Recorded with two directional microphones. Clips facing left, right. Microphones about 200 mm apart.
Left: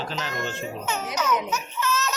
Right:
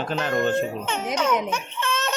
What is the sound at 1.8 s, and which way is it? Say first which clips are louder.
Baby laughter: even; 30° right (ahead or behind).